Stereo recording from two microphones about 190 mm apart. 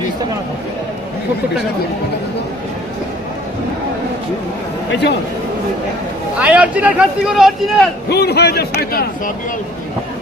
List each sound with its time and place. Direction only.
4.9 s speech: 65° left (ahead or behind)
6.4 s speech: 5° right (ahead or behind)
8.1 s speech: 55° left (ahead or behind)